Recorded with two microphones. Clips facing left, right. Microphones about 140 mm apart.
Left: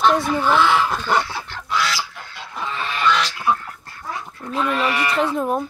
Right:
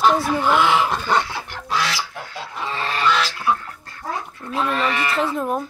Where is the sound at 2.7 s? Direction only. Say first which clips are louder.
Right 1 dB; 35° right (ahead or behind).